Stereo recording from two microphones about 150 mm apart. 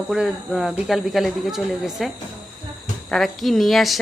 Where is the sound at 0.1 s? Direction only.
5° right (ahead or behind).